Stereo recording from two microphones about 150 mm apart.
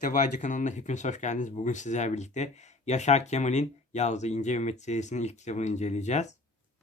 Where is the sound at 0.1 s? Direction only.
55° left (ahead or behind).